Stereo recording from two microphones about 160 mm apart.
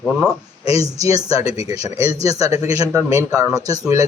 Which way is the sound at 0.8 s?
20° right (ahead or behind).